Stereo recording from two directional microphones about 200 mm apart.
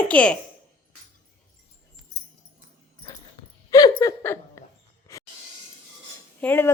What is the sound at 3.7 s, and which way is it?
Laughter, 20° left (ahead or behind).